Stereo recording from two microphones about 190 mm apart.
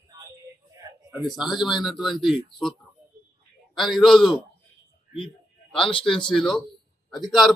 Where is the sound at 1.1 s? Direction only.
Centre (ahead or behind).